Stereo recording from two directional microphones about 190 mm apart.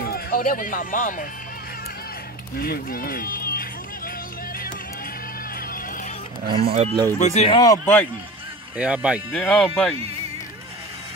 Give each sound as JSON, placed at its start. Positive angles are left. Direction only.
{"t": 0.1, "sound": "speech", "side_deg": 45}
{"t": 2.5, "sound": "speech", "side_deg": 50}
{"t": 6.5, "sound": "speech", "side_deg": -30}
{"t": 7.2, "sound": "speech", "side_deg": 35}
{"t": 7.6, "sound": "a man's voice", "side_deg": 15}
{"t": 8.7, "sound": "speech", "side_deg": -5}
{"t": 9.3, "sound": "speech", "side_deg": 5}